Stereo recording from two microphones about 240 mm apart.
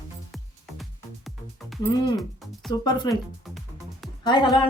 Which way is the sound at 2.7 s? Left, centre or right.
Centre.